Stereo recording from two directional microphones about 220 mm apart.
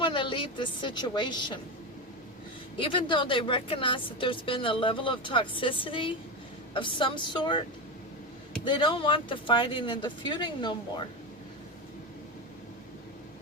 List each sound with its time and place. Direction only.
0.0 s a woman's voice: 25° left (ahead or behind)
2.7 s speech: 25° left (ahead or behind)
8.6 s speech: 20° left (ahead or behind)